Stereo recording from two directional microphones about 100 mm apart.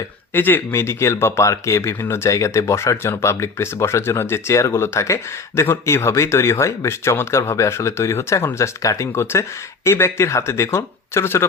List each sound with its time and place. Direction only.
0.3 s speech: 20° left (ahead or behind)